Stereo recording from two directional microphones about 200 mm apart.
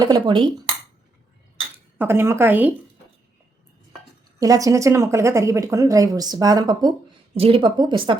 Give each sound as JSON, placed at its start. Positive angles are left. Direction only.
{"t": 0.0, "sound": "speech", "side_deg": -20}
{"t": 2.0, "sound": "speech", "side_deg": -10}
{"t": 4.4, "sound": "speech", "side_deg": -15}